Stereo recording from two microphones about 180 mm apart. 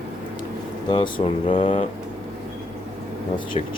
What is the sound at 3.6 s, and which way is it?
Speech, 35° left (ahead or behind).